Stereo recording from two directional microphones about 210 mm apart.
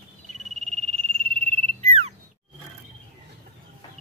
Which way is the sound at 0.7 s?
30° right (ahead or behind).